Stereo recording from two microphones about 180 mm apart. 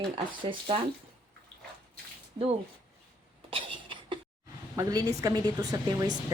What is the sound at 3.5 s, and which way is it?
Cough, 30° right (ahead or behind).